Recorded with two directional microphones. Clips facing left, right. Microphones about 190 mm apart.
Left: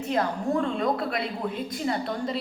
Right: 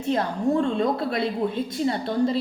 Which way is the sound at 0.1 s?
30° right (ahead or behind).